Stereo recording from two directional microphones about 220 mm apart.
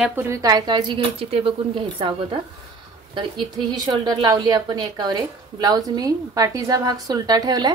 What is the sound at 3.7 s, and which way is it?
A woman's voice, 20° right (ahead or behind).